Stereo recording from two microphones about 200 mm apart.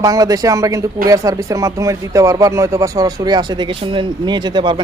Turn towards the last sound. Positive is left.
turn(degrees=-20)  # may be behind; listen again after turning